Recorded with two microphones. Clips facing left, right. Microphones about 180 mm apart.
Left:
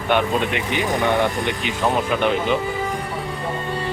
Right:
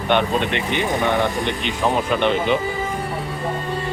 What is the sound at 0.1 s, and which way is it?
Speech, 5° left (ahead or behind).